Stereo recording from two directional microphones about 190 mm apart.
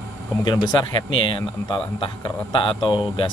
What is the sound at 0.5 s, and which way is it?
Speech, 20° left (ahead or behind).